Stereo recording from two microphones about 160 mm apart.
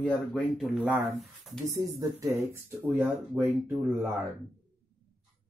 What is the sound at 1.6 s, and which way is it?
Speech, 20° right (ahead or behind).